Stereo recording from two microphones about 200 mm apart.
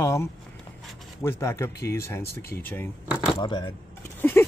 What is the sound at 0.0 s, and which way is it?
Speech, 15° left (ahead or behind).